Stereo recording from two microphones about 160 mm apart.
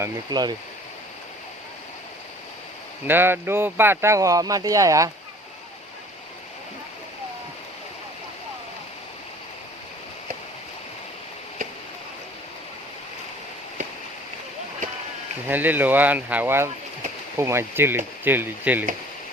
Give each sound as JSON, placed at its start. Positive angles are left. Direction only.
{"t": 0.0, "sound": "speech", "side_deg": -25}
{"t": 3.1, "sound": "speech", "side_deg": -15}
{"t": 15.4, "sound": "speech", "side_deg": -10}